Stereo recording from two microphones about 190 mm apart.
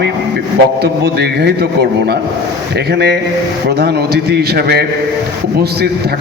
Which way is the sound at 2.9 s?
60° right (ahead or behind).